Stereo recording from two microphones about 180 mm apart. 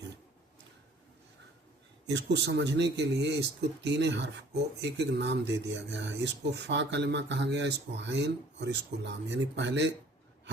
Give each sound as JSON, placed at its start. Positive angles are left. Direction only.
{"t": 2.0, "sound": "speech", "side_deg": -75}